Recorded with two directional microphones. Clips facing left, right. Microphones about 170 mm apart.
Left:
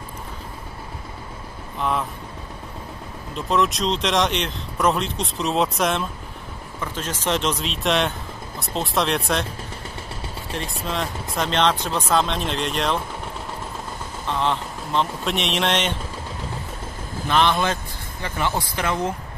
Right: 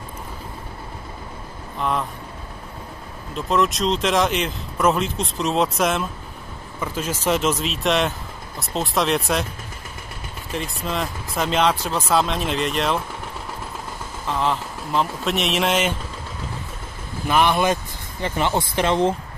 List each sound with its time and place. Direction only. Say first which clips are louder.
1.8 s speech: even; centre (ahead or behind)
3.3 s speech: right 1 dB; centre (ahead or behind)
10.5 s speech: right 2 dB; centre (ahead or behind)
14.2 s speech: right 1 dB; 5° right (ahead or behind)
17.3 s speech: right 2 dB; 15° right (ahead or behind)